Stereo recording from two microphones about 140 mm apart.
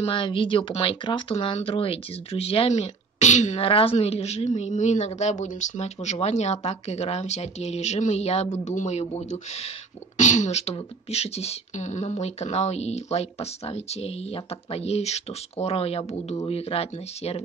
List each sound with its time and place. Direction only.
0.0 s speech: 35° left (ahead or behind)